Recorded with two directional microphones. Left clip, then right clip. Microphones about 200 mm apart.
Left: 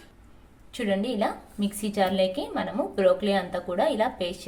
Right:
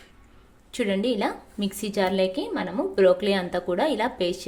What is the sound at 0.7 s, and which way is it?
A woman's voice, 35° right (ahead or behind).